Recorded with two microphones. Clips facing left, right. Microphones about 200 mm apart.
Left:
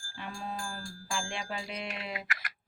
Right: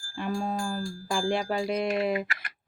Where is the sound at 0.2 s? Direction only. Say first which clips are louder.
Right 10 dB; 45° right (ahead or behind).